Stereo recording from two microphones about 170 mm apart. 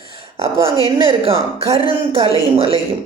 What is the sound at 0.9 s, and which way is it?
Speech, 30° right (ahead or behind).